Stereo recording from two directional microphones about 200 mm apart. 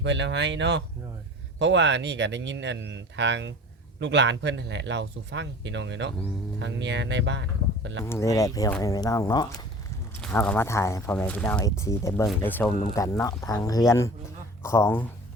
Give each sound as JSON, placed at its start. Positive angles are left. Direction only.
{"t": 0.0, "sound": "speech", "side_deg": -65}
{"t": 8.0, "sound": "speech", "side_deg": 15}
{"t": 10.2, "sound": "speech", "side_deg": 5}